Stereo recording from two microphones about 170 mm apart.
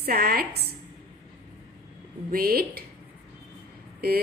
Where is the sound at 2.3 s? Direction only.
60° right (ahead or behind).